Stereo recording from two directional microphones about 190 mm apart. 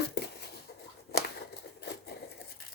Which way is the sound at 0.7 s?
55° left (ahead or behind).